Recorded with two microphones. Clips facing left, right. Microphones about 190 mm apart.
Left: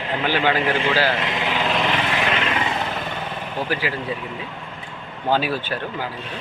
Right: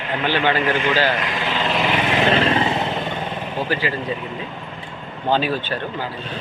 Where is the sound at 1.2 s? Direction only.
25° left (ahead or behind).